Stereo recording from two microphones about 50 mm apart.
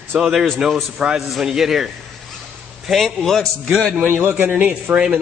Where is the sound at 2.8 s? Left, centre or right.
Centre.